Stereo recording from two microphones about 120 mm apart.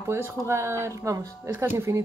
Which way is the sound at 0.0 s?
20° right (ahead or behind).